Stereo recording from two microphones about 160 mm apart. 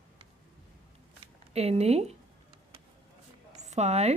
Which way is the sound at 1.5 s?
40° right (ahead or behind).